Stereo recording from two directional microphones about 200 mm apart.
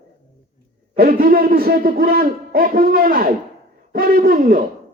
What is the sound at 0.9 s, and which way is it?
A man's voice, 45° right (ahead or behind).